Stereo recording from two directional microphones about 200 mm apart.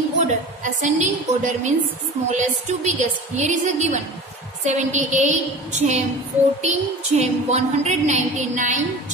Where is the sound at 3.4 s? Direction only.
35° right (ahead or behind).